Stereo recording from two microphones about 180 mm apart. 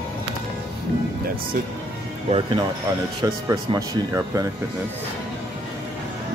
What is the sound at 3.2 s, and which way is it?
Speech, 20° right (ahead or behind).